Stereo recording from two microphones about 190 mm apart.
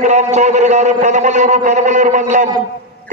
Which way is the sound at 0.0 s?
35° right (ahead or behind).